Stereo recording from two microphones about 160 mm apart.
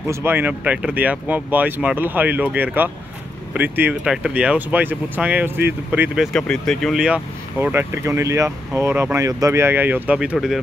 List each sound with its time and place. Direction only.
0.1 s speech: 15° right (ahead or behind)
6.3 s speech: 5° left (ahead or behind)
7.6 s speech: 15° right (ahead or behind)